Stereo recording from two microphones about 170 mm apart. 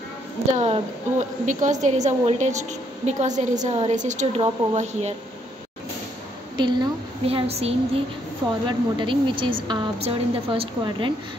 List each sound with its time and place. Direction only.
0.6 s a woman's voice: 40° right (ahead or behind)
6.5 s a woman's voice: 25° right (ahead or behind)